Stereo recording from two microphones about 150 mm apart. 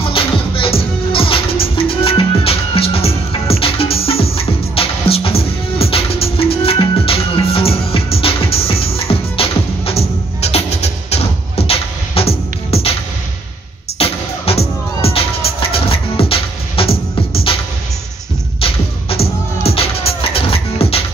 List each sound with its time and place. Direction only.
0.0 s music: 40° left (ahead or behind)
13.9 s music: 40° left (ahead or behind)
18.6 s music: 40° left (ahead or behind)